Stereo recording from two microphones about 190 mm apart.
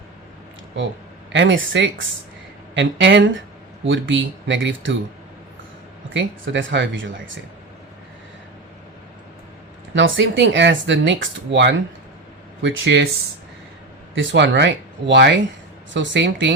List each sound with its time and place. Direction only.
1.3 s speech: 75° right (ahead or behind)
6.1 s speech: 85° right
9.9 s speech: 80° right
12.6 s speech: 85° right
14.2 s speech: 70° right (ahead or behind)